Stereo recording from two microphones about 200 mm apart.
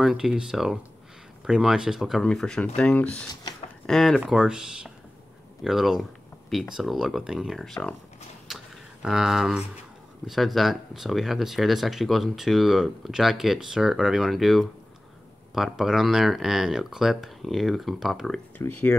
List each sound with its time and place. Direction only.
0.0 s speech: 5° right (ahead or behind)
8.5 s a sound: centre (ahead or behind)
9.0 s speech: centre (ahead or behind)
18.6 s speech: 10° left (ahead or behind)